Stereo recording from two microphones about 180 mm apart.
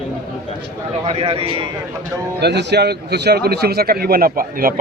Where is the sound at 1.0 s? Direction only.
35° right (ahead or behind).